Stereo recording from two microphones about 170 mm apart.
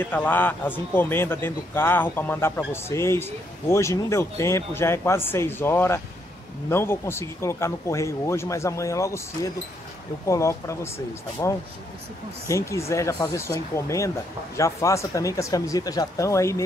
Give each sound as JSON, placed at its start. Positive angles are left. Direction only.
{"t": 0.0, "sound": "a man's voice", "side_deg": 10}